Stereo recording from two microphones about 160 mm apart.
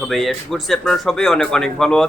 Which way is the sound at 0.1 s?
Centre (ahead or behind).